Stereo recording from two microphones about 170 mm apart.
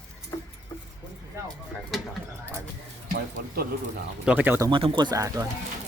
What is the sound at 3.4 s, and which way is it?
Speech, 65° right (ahead or behind).